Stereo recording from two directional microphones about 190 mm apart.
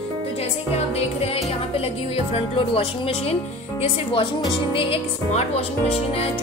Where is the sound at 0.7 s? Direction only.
35° left (ahead or behind).